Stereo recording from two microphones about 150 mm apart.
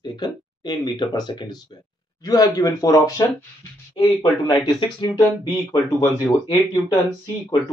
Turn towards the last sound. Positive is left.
turn(degrees=30)  # may be behind; listen again after turning